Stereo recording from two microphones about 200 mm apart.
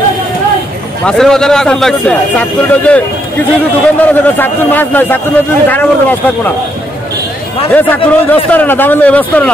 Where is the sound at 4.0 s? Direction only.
10° left (ahead or behind).